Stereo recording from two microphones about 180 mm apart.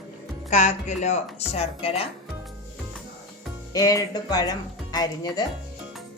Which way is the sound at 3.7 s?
20° left (ahead or behind).